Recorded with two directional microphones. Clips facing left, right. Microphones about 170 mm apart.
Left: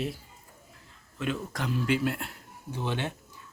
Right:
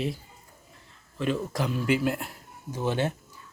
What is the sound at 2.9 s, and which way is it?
Speech, 40° right (ahead or behind).